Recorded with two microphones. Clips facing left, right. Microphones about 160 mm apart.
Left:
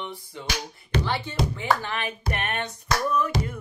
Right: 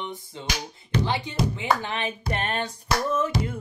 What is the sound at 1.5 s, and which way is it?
Music, 20° right (ahead or behind).